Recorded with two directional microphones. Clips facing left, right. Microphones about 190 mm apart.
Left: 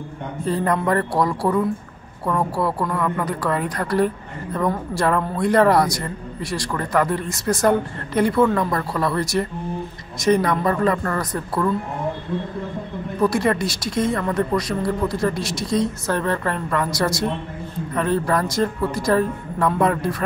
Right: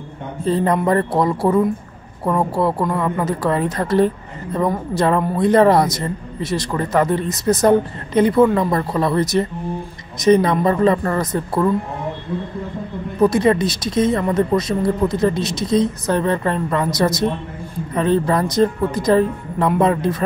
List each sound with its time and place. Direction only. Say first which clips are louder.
0.5 s speech: right 4 dB; 20° right (ahead or behind)
13.2 s speech: right 5 dB; 20° right (ahead or behind)